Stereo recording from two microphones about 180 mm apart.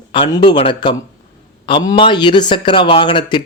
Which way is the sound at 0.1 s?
25° left (ahead or behind).